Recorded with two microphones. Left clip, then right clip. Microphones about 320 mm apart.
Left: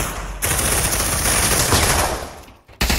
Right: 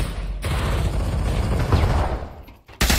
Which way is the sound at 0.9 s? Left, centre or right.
Left.